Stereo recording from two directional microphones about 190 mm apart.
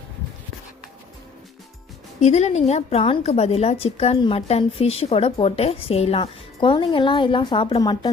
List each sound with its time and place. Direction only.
2.2 s a woman's voice: 35° left (ahead or behind)